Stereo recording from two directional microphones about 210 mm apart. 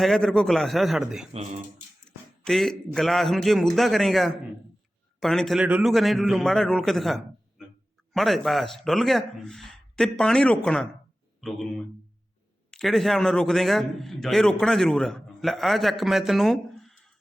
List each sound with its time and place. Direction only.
0.0 s a man's voice: centre (ahead or behind)
12.7 s a man's voice: centre (ahead or behind)